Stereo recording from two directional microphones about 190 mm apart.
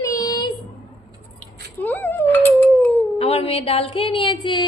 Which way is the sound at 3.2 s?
30° left (ahead or behind).